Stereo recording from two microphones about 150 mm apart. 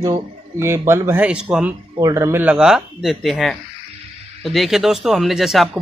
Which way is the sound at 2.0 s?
20° right (ahead or behind).